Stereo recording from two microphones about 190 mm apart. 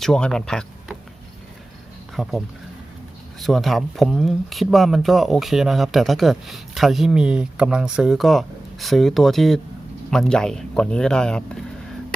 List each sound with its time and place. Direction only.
0.0 s speech: 5° left (ahead or behind)
2.1 s speech: centre (ahead or behind)
3.4 s speech: centre (ahead or behind)